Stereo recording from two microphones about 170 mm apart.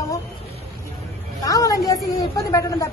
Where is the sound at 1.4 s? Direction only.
20° left (ahead or behind).